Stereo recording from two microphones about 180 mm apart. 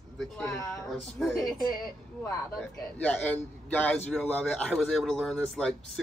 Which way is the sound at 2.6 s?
10° left (ahead or behind).